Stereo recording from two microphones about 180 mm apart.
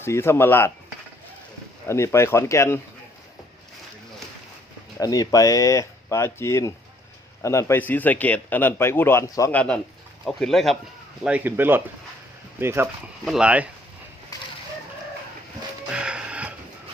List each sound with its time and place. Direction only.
0.0 s a man's voice: 15° left (ahead or behind)
1.9 s a man's voice: 15° left (ahead or behind)
4.9 s a man's voice: 20° left (ahead or behind); by 13.7 s 5° right (ahead or behind)
14.3 s chicken: 20° left (ahead or behind)
15.9 s music: 5° right (ahead or behind)